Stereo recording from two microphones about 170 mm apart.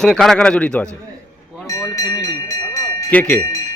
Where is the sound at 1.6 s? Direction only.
20° left (ahead or behind).